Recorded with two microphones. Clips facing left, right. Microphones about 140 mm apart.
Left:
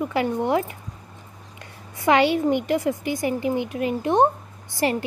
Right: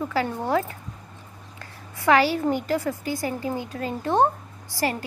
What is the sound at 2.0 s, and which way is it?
A woman's voice, 20° left (ahead or behind).